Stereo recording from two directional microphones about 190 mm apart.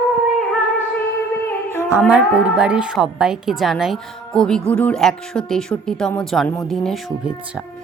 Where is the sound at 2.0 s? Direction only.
5° right (ahead or behind).